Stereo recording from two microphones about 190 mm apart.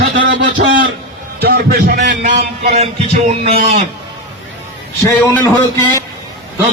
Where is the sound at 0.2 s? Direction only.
75° right (ahead or behind).